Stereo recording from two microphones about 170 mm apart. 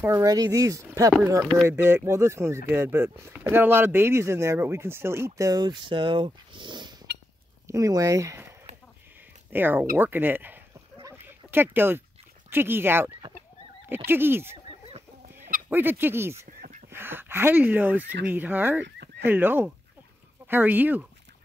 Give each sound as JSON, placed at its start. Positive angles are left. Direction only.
{"t": 0.0, "sound": "speech", "side_deg": -20}
{"t": 1.4, "sound": "speech", "side_deg": 5}
{"t": 1.7, "sound": "speech", "side_deg": -15}
{"t": 9.5, "sound": "speech", "side_deg": -10}
{"t": 9.9, "sound": "a sound", "side_deg": -10}
{"t": 12.4, "sound": "speech", "side_deg": -10}
{"t": 15.7, "sound": "speech", "side_deg": -10}
{"t": 18.9, "sound": "a sound", "side_deg": -80}
{"t": 19.2, "sound": "speech", "side_deg": -10}